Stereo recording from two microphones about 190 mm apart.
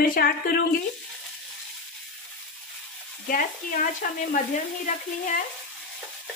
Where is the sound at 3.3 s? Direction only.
45° left (ahead or behind).